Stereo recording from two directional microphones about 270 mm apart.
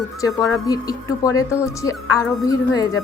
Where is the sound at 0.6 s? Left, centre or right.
Centre.